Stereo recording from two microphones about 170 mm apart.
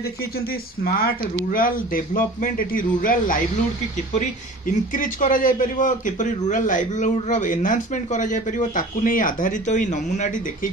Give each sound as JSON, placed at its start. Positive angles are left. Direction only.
{"t": 0.0, "sound": "speech", "side_deg": 65}
{"t": 4.6, "sound": "speech", "side_deg": 50}